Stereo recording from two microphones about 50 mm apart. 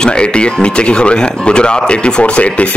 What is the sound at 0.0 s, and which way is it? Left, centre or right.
A man's voice, centre.